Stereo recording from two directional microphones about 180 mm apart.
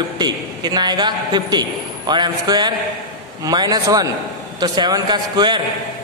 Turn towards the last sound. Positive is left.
turn(degrees=-25)  # may be behind; listen again after turning